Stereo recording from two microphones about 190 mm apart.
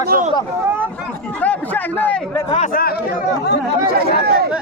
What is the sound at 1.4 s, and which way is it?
A man's voice, 10° left (ahead or behind).